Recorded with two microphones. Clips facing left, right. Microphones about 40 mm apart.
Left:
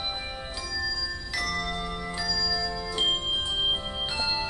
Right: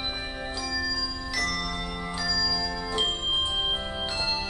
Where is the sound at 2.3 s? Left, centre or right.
Centre.